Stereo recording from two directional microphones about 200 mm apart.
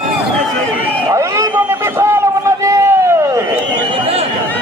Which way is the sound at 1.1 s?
15° right (ahead or behind).